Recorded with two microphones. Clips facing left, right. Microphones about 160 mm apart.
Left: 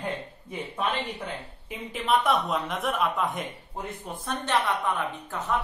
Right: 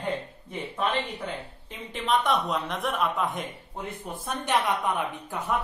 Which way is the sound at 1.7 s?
10° left (ahead or behind).